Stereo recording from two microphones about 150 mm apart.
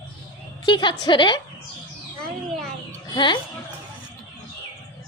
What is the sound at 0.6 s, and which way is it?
Speech, 30° left (ahead or behind).